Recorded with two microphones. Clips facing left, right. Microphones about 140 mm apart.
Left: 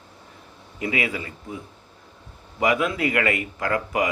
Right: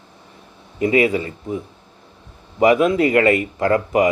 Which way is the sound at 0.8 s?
30° right (ahead or behind).